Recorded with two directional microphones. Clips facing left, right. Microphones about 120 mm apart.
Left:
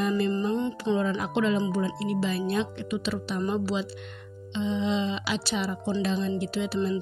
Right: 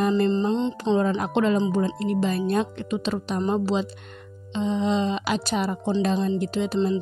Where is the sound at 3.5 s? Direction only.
40° right (ahead or behind).